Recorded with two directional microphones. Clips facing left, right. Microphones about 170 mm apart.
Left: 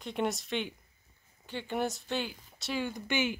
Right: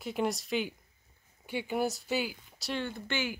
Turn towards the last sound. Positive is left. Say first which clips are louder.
# left 3 dB
turn(degrees=15)  # may be behind; listen again after turning